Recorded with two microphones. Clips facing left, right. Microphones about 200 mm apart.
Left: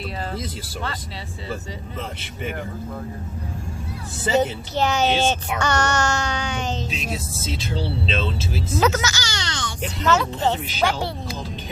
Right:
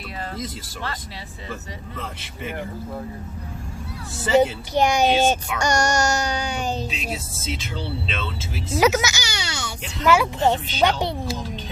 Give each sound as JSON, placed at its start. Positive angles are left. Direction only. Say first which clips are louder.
{"t": 4.4, "sound": "speech", "louder": "right 4 dB", "side_deg": -15}
{"t": 5.7, "sound": "baby cry", "louder": "right 2 dB", "side_deg": -40}
{"t": 7.6, "sound": "speech", "louder": "left 4 dB", "side_deg": 30}
{"t": 8.8, "sound": "a child's voice", "louder": "right 3 dB", "side_deg": -10}
{"t": 10.7, "sound": "speech", "louder": "right 2 dB", "side_deg": -25}